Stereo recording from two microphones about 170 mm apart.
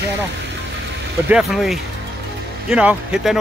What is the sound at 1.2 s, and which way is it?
Speech, 5° right (ahead or behind).